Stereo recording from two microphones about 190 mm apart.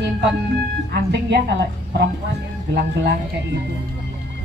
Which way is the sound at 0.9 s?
65° right (ahead or behind).